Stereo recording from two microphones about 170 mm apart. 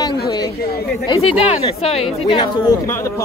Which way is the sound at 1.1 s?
35° left (ahead or behind).